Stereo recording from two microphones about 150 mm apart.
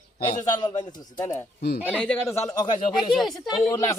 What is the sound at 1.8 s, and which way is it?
Speech, 10° left (ahead or behind).